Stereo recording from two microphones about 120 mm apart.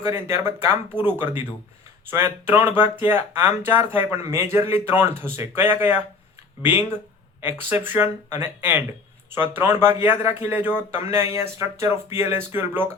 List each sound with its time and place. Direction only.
0.0 s speech: 20° right (ahead or behind)